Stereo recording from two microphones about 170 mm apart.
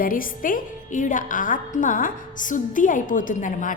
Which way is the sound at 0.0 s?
55° left (ahead or behind).